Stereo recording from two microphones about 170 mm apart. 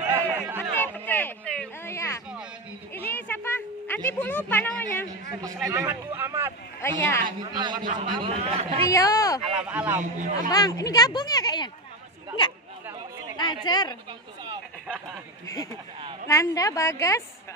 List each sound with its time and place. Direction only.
0.0 s a sound: 15° right (ahead or behind)
0.7 s a sound: 10° left (ahead or behind)
5.7 s a man's voice: 15° right (ahead or behind)
7.0 s a man's voice: 15° left (ahead or behind)
7.5 s a man's voice: 25° right (ahead or behind)
7.8 s speech: 50° right (ahead or behind)
8.1 s speech: 30° right (ahead or behind)
8.8 s speech: 20° left (ahead or behind)
9.4 s speech: 5° right (ahead or behind)
10.1 s speech: 50° right (ahead or behind)
10.5 s speech: 20° left (ahead or behind)
13.5 s speech: 25° left (ahead or behind)
15.4 s speech: 20° left (ahead or behind)